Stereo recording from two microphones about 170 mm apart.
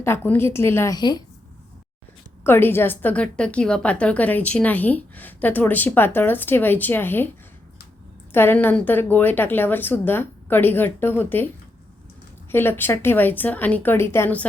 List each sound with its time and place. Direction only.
0.0 s a woman's voice: 15° left (ahead or behind)
0.9 s a woman's voice: 25° left (ahead or behind)
2.4 s a woman's voice: 15° left (ahead or behind)
8.3 s a woman's voice: 15° left (ahead or behind)
12.5 s a woman's voice: 15° left (ahead or behind)